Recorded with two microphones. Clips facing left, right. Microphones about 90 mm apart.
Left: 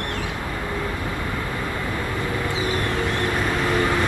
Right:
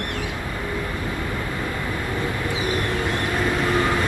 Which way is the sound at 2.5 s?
20° right (ahead or behind).